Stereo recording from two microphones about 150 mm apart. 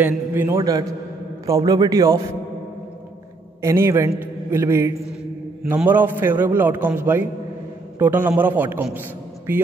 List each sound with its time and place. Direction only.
0.0 s a man's voice: 15° right (ahead or behind)
3.6 s a man's voice: 15° right (ahead or behind)